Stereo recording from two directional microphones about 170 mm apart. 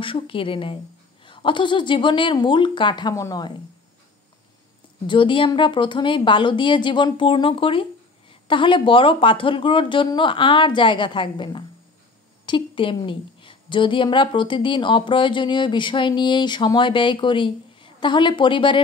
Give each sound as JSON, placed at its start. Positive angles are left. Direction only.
{"t": 0.0, "sound": "a woman's voice", "side_deg": 30}
{"t": 5.0, "sound": "a woman's voice", "side_deg": 30}